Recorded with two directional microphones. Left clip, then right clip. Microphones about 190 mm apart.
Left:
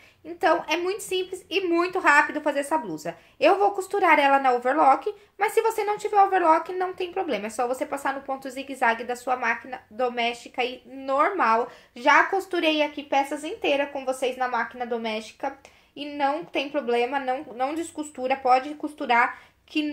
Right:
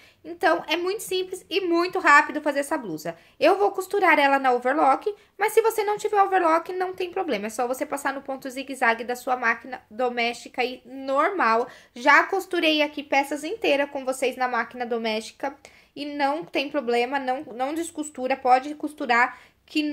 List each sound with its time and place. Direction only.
0.4 s speech: 20° right (ahead or behind)